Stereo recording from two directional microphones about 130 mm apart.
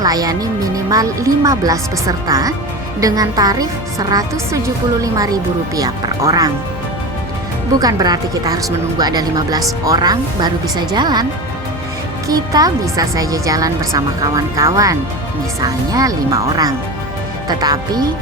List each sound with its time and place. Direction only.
0.0 s a woman's voice: 30° right (ahead or behind)
7.8 s speech: 30° right (ahead or behind)
12.3 s a woman's voice: 30° right (ahead or behind)